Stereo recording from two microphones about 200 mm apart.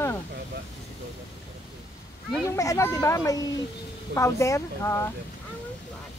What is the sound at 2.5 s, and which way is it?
A child's voice, 15° left (ahead or behind).